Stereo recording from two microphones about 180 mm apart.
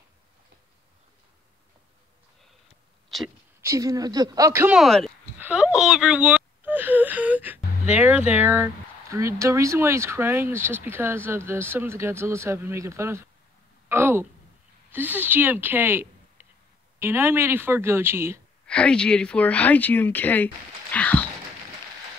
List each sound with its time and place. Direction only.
3.6 s speech: 20° right (ahead or behind)
4.7 s speech: centre (ahead or behind)
5.4 s a sound: 5° right (ahead or behind)
9.1 s speech: 15° right (ahead or behind)
18.7 s speech: 5° left (ahead or behind)